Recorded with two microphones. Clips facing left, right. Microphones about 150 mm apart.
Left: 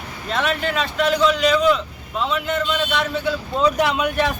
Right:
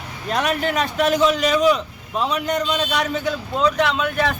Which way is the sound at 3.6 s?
5° left (ahead or behind).